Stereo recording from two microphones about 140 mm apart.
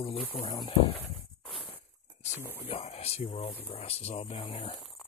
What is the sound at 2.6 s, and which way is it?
Speech, 45° left (ahead or behind).